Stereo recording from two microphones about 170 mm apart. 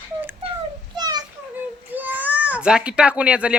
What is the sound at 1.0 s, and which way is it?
Children playing, 25° right (ahead or behind).